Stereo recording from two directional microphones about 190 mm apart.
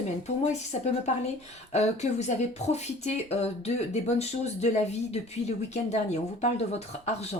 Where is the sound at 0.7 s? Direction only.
40° left (ahead or behind).